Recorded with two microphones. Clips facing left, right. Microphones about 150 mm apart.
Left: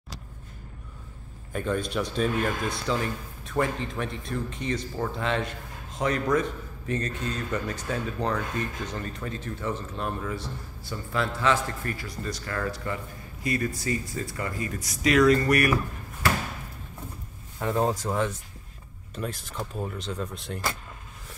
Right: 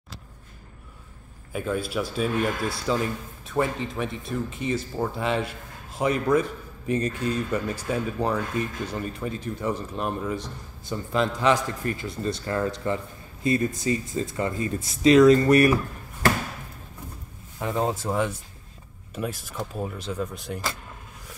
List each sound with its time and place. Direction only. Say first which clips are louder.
1.5 s speech: right 1 dB; 5° right (ahead or behind); by 15.8 s 25° right (ahead or behind)
17.7 s speech: right 1 dB; 15° right (ahead or behind)